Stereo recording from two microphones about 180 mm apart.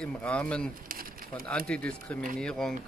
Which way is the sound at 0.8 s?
55° right (ahead or behind).